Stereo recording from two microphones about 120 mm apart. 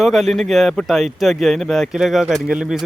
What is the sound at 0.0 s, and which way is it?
Speech, centre (ahead or behind).